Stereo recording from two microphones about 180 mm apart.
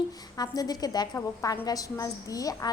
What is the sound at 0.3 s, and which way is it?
A woman's voice, 20° left (ahead or behind).